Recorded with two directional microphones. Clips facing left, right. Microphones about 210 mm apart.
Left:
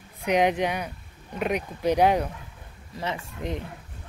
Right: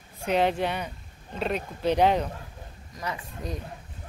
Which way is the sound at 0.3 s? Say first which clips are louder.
Left 2 dB; 15° left (ahead or behind).